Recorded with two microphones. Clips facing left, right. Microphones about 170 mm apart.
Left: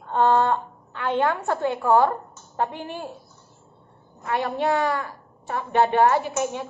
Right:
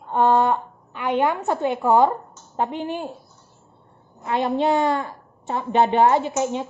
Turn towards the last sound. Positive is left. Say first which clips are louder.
# right 3 dB
turn(degrees=-20)  # may be behind; listen again after turning